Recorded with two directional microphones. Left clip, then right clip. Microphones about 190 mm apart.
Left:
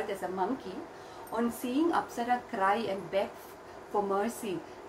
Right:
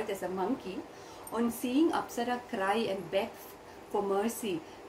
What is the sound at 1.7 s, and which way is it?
A woman's voice, 20° right (ahead or behind).